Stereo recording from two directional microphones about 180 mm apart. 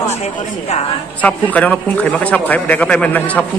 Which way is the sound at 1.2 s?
10° left (ahead or behind).